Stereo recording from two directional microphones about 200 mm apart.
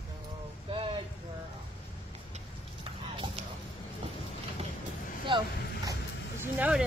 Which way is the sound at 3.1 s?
25° right (ahead or behind).